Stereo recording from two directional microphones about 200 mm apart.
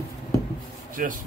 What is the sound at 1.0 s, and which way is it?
Speech, 40° right (ahead or behind).